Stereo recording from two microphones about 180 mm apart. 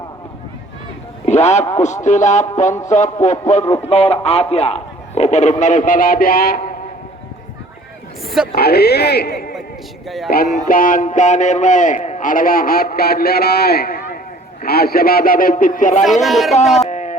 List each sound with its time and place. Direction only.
1.2 s a man's voice: 40° left (ahead or behind); by 6.7 s 55° left (ahead or behind)
8.5 s a man's voice: 60° left (ahead or behind); by 16.0 s 45° left (ahead or behind)
16.2 s speech: centre (ahead or behind)
16.9 s music: 40° left (ahead or behind)